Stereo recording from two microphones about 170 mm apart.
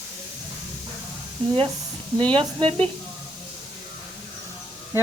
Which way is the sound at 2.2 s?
30° right (ahead or behind).